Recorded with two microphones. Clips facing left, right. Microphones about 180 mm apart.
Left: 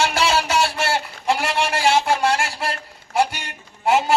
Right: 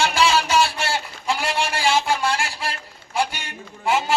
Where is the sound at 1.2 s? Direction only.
60° left (ahead or behind).